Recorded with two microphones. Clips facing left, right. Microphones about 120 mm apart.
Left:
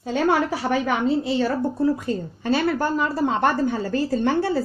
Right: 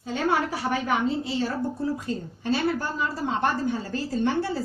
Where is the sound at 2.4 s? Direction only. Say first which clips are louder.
Left 4 dB; 75° left (ahead or behind).